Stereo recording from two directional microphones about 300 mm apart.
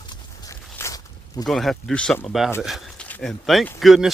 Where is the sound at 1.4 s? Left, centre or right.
Centre.